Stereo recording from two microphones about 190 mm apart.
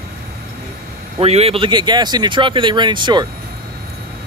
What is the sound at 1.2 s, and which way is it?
Speech, 30° right (ahead or behind).